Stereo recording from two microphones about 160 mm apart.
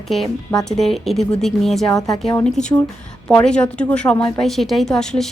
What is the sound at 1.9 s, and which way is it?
Speech, 20° left (ahead or behind).